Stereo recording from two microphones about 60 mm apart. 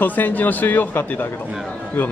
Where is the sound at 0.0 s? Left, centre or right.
Left.